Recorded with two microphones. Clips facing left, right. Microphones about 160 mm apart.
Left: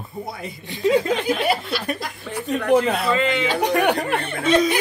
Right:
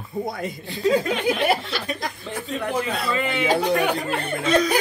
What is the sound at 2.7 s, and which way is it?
Speech, 70° left (ahead or behind).